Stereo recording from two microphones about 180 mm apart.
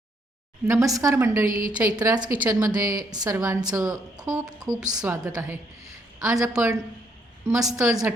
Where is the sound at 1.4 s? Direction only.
50° right (ahead or behind).